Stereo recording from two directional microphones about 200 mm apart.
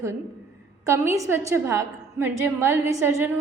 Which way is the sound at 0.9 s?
15° right (ahead or behind).